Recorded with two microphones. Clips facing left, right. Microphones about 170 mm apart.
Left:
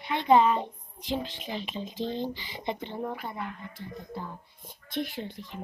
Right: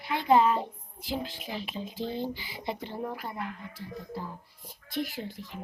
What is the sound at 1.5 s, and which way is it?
Speech, 10° right (ahead or behind).